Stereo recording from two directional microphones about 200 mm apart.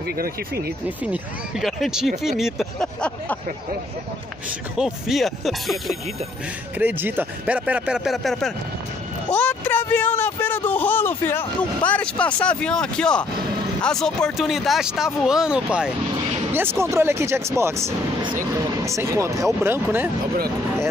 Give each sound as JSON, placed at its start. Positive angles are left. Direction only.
{"t": 0.0, "sound": "speech", "side_deg": -50}
{"t": 0.8, "sound": "speech", "side_deg": -5}
{"t": 4.7, "sound": "speech", "side_deg": 0}